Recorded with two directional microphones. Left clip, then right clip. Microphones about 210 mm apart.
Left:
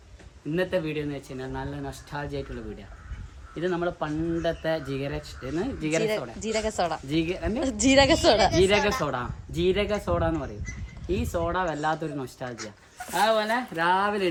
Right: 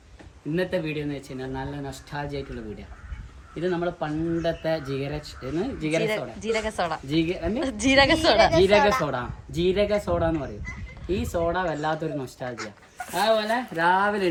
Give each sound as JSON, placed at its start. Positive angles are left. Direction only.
{"t": 0.5, "sound": "speech", "side_deg": 0}
{"t": 3.5, "sound": "speech", "side_deg": 0}
{"t": 6.0, "sound": "speech", "side_deg": 20}
{"t": 7.1, "sound": "speech", "side_deg": 0}
{"t": 7.6, "sound": "a woman's voice", "side_deg": 20}
{"t": 8.7, "sound": "a man's voice", "side_deg": -25}
{"t": 9.0, "sound": "speech", "side_deg": 0}